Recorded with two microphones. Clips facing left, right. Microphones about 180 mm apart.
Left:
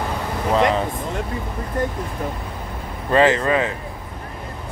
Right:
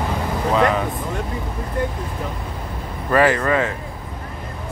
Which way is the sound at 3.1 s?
20° left (ahead or behind).